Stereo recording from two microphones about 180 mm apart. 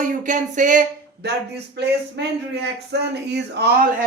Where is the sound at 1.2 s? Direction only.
65° right (ahead or behind).